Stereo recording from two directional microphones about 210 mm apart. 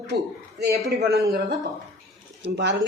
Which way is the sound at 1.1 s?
50° right (ahead or behind).